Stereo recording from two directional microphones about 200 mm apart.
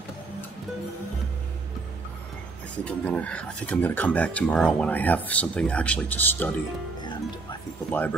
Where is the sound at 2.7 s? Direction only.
5° left (ahead or behind).